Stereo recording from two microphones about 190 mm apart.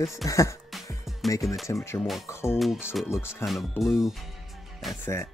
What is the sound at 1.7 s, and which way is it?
Speech, 15° left (ahead or behind).